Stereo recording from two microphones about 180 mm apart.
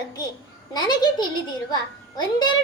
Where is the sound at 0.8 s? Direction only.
25° left (ahead or behind).